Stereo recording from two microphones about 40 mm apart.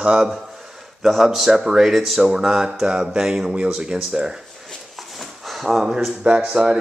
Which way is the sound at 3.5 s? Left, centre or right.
Right.